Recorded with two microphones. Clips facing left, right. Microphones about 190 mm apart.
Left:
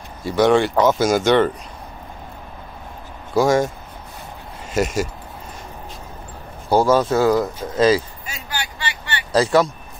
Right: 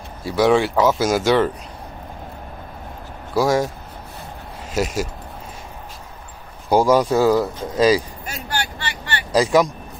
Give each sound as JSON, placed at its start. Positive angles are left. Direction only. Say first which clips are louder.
{"t": 0.2, "sound": "speech", "louder": "left 1 dB", "side_deg": -5}
{"t": 3.3, "sound": "speech", "louder": "left 2 dB", "side_deg": 0}
{"t": 4.7, "sound": "speech", "louder": "left 2 dB", "side_deg": 0}
{"t": 6.7, "sound": "speech", "louder": "even", "side_deg": -10}
{"t": 8.3, "sound": "vehicle", "louder": "right 4 dB", "side_deg": -50}
{"t": 9.3, "sound": "speech", "louder": "even", "side_deg": -10}